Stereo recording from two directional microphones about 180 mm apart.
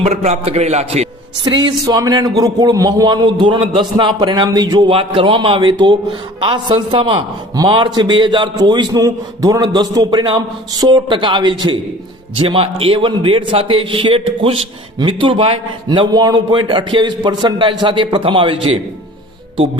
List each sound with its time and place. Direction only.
0.0 s a man's voice: 40° right (ahead or behind)
1.5 s a man's voice: 25° right (ahead or behind)